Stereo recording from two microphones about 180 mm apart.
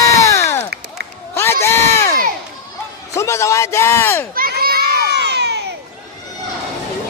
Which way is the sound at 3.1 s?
15° left (ahead or behind).